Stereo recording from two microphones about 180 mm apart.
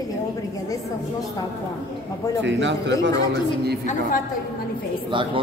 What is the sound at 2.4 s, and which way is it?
Speech, 85° right.